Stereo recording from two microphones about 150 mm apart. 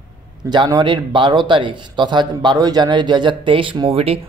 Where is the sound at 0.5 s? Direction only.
30° right (ahead or behind).